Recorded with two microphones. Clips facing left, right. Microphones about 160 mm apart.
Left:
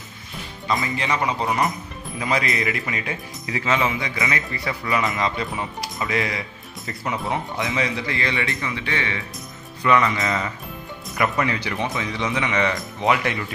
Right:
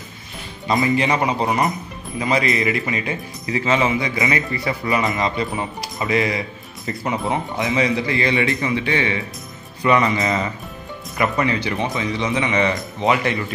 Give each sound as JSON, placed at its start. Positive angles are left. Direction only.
{"t": 0.7, "sound": "a man's voice", "side_deg": -20}
{"t": 2.1, "sound": "speech", "side_deg": 0}
{"t": 11.1, "sound": "speech", "side_deg": 0}